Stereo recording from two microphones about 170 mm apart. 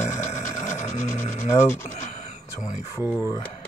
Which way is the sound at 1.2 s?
40° left (ahead or behind).